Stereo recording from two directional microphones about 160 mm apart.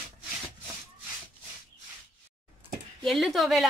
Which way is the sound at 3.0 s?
Centre (ahead or behind).